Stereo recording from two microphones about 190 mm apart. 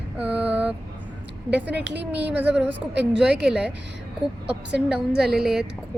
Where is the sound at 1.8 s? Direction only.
65° right (ahead or behind).